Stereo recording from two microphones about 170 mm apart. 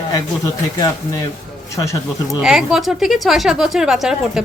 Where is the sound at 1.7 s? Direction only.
20° left (ahead or behind).